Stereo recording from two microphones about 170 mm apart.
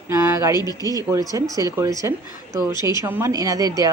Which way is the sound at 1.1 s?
20° right (ahead or behind).